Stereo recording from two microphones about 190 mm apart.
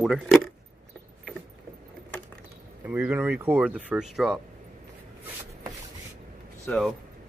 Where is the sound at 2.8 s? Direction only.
10° right (ahead or behind).